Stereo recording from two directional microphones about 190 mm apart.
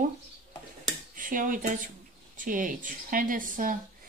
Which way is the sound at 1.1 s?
45° right (ahead or behind).